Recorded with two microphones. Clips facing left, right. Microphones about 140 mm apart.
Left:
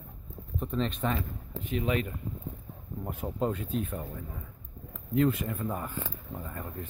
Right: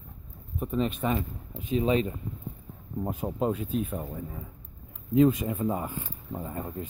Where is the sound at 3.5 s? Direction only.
10° right (ahead or behind).